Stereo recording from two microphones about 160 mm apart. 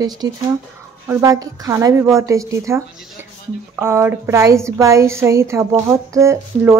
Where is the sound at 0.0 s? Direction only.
25° right (ahead or behind).